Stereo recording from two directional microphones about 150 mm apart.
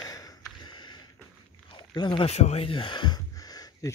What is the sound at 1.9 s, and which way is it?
Speech, 30° left (ahead or behind).